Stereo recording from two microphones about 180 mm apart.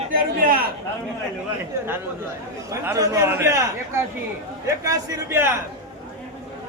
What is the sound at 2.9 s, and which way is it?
A man's voice, 15° right (ahead or behind).